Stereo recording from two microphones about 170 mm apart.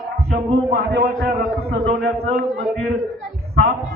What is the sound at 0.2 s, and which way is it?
A man's voice, 70° right (ahead or behind).